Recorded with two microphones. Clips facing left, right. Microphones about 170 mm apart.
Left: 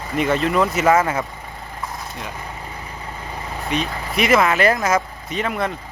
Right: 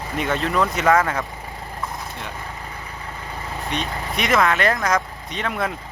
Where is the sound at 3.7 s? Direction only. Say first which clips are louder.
Left 4 dB; 5° left (ahead or behind).